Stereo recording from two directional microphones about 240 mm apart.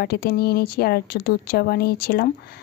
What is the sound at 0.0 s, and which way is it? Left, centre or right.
Speech, left.